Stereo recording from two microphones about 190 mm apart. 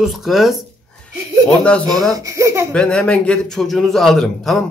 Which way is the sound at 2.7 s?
5° left (ahead or behind).